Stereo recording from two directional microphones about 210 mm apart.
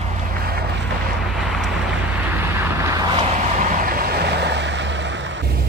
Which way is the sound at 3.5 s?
40° right (ahead or behind).